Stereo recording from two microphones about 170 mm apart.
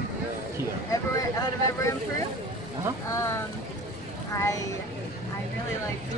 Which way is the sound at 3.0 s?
20° left (ahead or behind).